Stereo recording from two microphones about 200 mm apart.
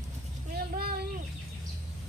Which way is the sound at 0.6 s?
50° right (ahead or behind).